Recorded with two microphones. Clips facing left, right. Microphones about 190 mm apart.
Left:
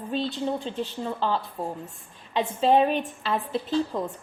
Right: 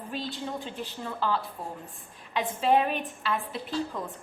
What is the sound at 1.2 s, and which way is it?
A woman's voice, 25° left (ahead or behind).